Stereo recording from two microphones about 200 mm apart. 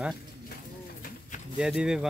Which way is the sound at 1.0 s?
40° left (ahead or behind).